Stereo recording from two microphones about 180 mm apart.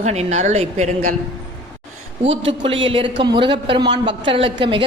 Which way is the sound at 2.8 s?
30° right (ahead or behind).